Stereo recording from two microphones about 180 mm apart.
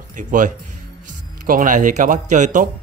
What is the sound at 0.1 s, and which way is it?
A man's voice, 45° right (ahead or behind).